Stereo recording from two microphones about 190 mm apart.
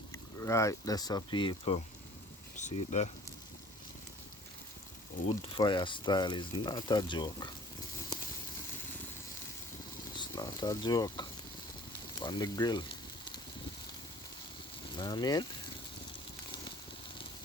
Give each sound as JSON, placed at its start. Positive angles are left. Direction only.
{"t": 0.1, "sound": "speech", "side_deg": 15}
{"t": 2.6, "sound": "speech", "side_deg": 40}
{"t": 5.5, "sound": "speech", "side_deg": 25}
{"t": 10.2, "sound": "speech", "side_deg": 20}
{"t": 14.9, "sound": "speech", "side_deg": 20}